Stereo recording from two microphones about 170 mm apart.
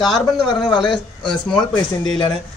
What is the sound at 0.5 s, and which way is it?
Speech, 25° left (ahead or behind).